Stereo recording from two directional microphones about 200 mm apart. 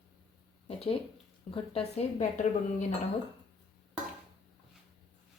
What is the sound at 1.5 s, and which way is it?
A woman's voice, 30° left (ahead or behind).